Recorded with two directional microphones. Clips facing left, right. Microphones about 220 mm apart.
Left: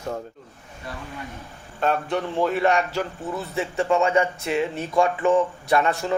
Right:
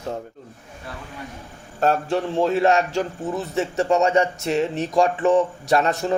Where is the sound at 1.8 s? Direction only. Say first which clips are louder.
Right 3 dB; 35° right (ahead or behind).